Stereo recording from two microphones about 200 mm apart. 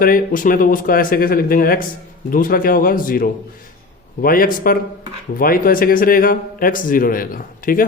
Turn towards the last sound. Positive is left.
turn(degrees=45)  # may be behind; listen again after turning